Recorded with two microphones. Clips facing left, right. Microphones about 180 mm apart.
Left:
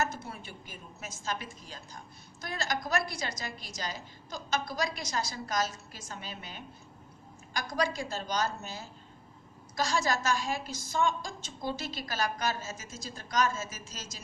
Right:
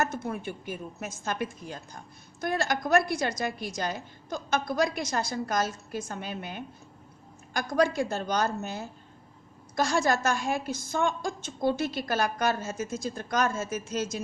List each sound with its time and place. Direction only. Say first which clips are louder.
0.0 s a woman's voice: right 5 dB; 55° right (ahead or behind)